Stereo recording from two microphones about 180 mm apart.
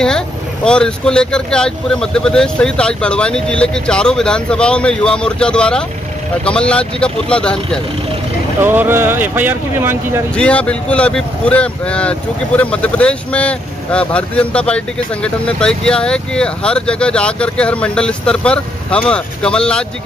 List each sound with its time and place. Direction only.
0.7 s speech: 5° left (ahead or behind)
8.6 s speech: 10° right (ahead or behind)
10.3 s speech: 5° left (ahead or behind)